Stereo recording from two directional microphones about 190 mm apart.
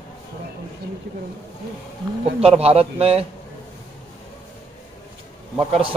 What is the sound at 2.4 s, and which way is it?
Speech, 30° right (ahead or behind).